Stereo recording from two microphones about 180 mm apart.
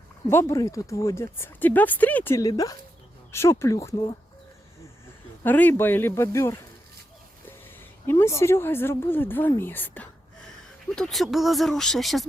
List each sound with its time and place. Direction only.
0.3 s speech: 15° left (ahead or behind)
5.4 s speech: 10° left (ahead or behind)
7.8 s a woman's voice: 15° left (ahead or behind)